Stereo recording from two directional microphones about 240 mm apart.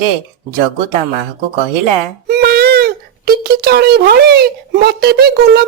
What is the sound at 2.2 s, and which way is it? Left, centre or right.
Speech, right.